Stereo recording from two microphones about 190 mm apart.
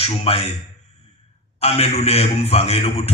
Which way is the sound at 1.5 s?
30° left (ahead or behind).